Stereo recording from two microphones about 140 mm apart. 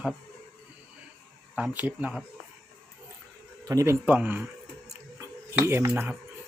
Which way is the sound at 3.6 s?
20° right (ahead or behind).